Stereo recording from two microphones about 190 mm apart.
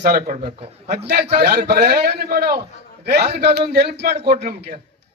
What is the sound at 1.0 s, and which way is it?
A man's voice, 60° right (ahead or behind).